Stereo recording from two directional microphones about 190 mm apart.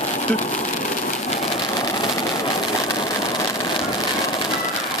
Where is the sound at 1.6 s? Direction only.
20° left (ahead or behind).